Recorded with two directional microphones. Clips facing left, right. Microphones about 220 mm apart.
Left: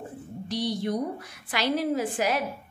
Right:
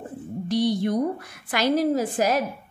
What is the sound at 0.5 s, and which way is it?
A woman's voice, 55° right (ahead or behind).